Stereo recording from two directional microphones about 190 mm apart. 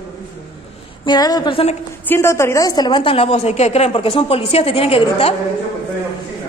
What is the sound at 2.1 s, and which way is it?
A woman's voice, 15° left (ahead or behind).